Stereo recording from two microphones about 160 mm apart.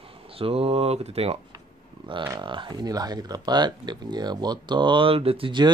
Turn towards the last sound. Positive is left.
turn(degrees=-30)  # may be behind; listen again after turning